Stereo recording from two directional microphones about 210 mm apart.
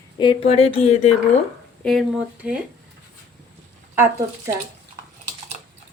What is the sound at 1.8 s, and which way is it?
Speech, centre (ahead or behind).